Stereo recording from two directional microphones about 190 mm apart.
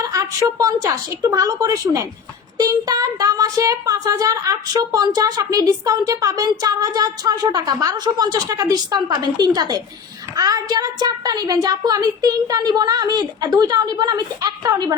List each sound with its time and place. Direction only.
0.1 s a woman's voice: 20° right (ahead or behind)